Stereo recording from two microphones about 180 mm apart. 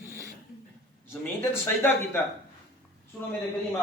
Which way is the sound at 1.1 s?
10° left (ahead or behind).